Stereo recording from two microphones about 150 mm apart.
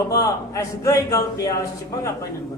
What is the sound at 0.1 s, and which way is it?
A man's voice, 20° left (ahead or behind).